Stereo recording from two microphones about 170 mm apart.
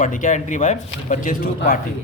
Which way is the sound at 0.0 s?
50° left (ahead or behind).